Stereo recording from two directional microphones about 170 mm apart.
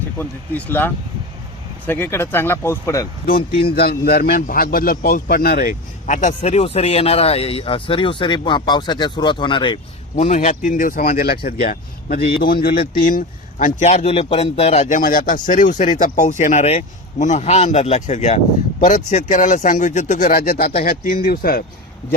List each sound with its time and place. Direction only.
0.2 s speech: 10° left (ahead or behind)
3.2 s a man's voice: 60° left (ahead or behind); by 9.8 s 30° left (ahead or behind)
10.2 s a man's voice: 40° left (ahead or behind); by 12.9 s 65° left (ahead or behind)
13.0 s a man's voice: 55° left (ahead or behind)